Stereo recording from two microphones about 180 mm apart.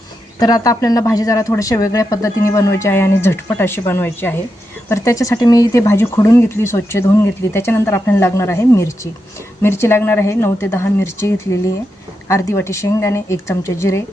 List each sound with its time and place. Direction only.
0.3 s speech: 20° left (ahead or behind)